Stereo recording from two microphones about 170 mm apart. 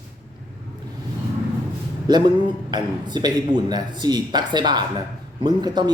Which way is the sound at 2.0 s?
25° right (ahead or behind).